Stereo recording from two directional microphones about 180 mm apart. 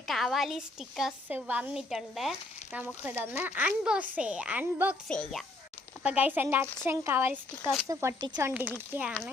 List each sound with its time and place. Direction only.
0.1 s a woman's voice: centre (ahead or behind)
5.0 s a woman's voice: 5° left (ahead or behind)
6.0 s speech: 5° right (ahead or behind)